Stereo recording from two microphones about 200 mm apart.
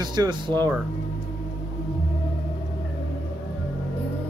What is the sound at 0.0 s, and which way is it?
Speech, 20° right (ahead or behind).